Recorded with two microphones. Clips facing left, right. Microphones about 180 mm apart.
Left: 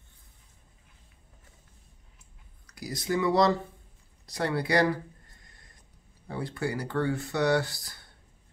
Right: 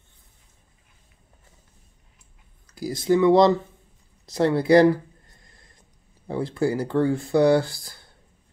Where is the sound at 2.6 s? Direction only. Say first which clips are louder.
Right 10 dB; 25° right (ahead or behind).